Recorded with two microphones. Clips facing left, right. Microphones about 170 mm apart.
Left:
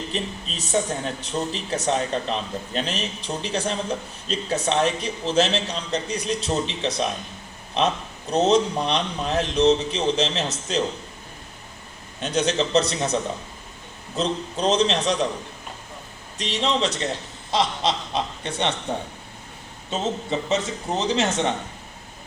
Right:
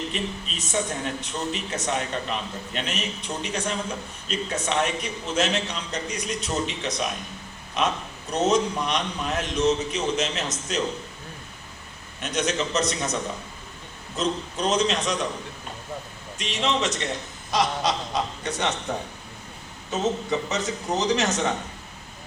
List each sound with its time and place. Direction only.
0.1 s speech: 35° left (ahead or behind)
12.2 s speech: 30° left (ahead or behind)
14.2 s speech: 30° left (ahead or behind)
16.4 s speech: 35° left (ahead or behind)
20.5 s speech: 30° left (ahead or behind)